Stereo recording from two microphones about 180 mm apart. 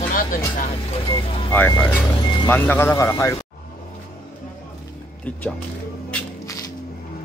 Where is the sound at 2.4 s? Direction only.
10° left (ahead or behind).